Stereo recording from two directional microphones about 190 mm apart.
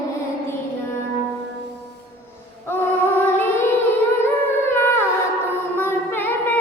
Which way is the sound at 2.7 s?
10° left (ahead or behind).